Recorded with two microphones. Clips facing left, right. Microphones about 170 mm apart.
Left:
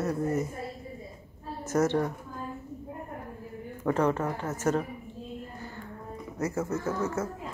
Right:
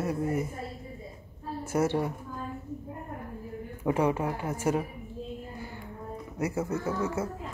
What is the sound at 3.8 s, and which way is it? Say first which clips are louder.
A woman's voice: even; 10° right (ahead or behind).